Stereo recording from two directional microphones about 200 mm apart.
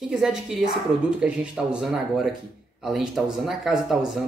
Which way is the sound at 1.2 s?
5° right (ahead or behind).